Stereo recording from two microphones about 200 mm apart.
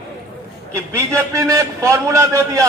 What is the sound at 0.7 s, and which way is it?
A man's voice, 15° right (ahead or behind).